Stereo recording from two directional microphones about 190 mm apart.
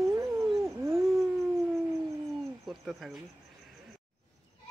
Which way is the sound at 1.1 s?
Centre (ahead or behind).